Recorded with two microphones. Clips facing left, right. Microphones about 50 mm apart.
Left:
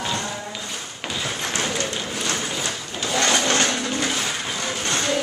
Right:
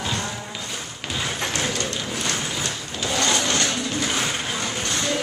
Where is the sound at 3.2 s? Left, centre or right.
Left.